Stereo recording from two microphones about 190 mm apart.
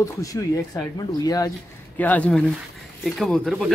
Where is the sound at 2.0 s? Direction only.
10° left (ahead or behind).